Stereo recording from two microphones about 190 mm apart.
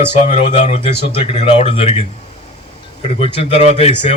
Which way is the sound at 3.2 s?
30° left (ahead or behind).